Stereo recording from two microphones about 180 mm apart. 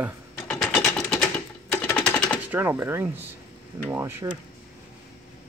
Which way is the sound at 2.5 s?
10° right (ahead or behind).